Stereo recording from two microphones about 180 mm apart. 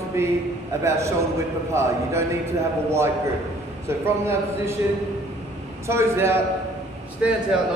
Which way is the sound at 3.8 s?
15° right (ahead or behind).